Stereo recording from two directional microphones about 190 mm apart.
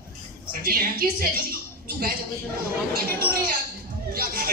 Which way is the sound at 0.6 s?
50° right (ahead or behind).